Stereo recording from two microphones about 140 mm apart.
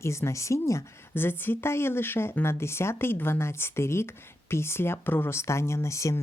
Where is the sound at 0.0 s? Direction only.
20° left (ahead or behind).